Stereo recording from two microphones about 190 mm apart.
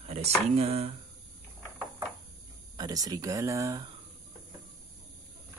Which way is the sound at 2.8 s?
20° right (ahead or behind).